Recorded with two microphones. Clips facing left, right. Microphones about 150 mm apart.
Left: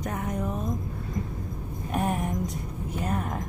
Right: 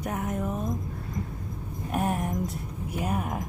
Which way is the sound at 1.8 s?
5° right (ahead or behind).